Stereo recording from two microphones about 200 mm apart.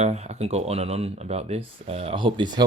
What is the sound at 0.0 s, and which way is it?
Speech, 35° right (ahead or behind).